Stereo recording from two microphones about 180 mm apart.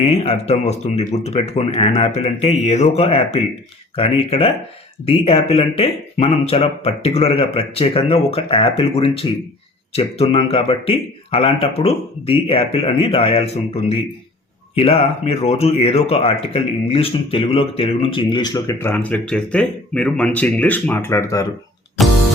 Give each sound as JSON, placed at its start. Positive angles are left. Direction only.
{"t": 0.0, "sound": "speech", "side_deg": 30}